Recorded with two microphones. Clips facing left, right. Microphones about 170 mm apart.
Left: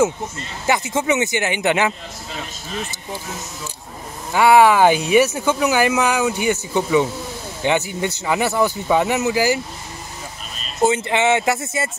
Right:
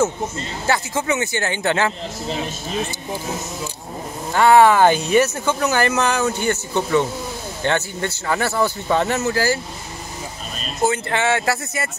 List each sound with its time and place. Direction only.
0.7 s speech: 20° left (ahead or behind)
4.3 s speech: 10° left (ahead or behind)
10.8 s speech: 20° left (ahead or behind)